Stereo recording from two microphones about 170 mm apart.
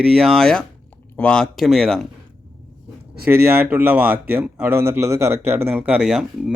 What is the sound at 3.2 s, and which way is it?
Speech, 10° right (ahead or behind).